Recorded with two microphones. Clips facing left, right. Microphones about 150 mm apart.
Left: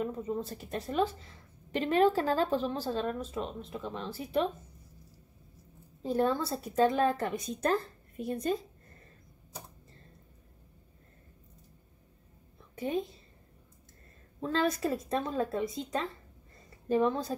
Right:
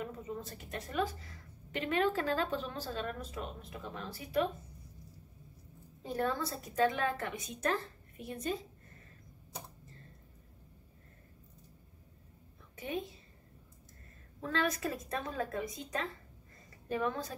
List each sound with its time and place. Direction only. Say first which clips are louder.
0.0 s a woman's voice: left 7 dB; 30° left (ahead or behind)
6.0 s a woman's voice: left 6 dB; 30° left (ahead or behind)
12.7 s a woman's voice: left 6 dB; 35° left (ahead or behind)
14.4 s a woman's voice: left 4 dB; 35° left (ahead or behind)